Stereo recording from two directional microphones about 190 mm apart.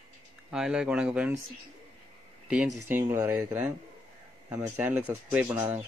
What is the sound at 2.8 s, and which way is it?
Speech, 10° right (ahead or behind).